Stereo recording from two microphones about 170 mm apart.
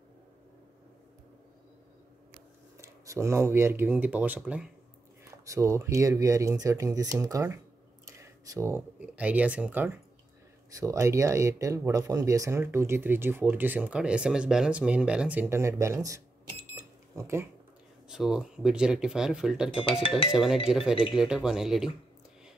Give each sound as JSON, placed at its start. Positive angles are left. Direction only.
{"t": 2.8, "sound": "speech", "side_deg": -15}
{"t": 5.4, "sound": "speech", "side_deg": -20}
{"t": 8.2, "sound": "a sound", "side_deg": -15}
{"t": 9.0, "sound": "speech", "side_deg": -10}
{"t": 16.7, "sound": "smoke detector", "side_deg": -15}
{"t": 18.0, "sound": "speech", "side_deg": -5}
{"t": 19.8, "sound": "speech", "side_deg": 30}
{"t": 20.2, "sound": "speech", "side_deg": -5}